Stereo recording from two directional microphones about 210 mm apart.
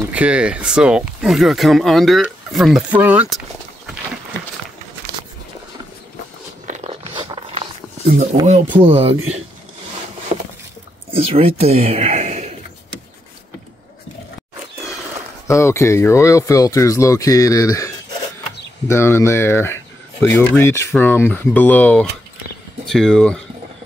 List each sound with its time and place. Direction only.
0.0 s speech: 5° right (ahead or behind)
6.7 s dog: 30° right (ahead or behind)
8.5 s speech: 30° right (ahead or behind)
11.1 s a sound: 30° right (ahead or behind)
15.4 s speech: 15° left (ahead or behind)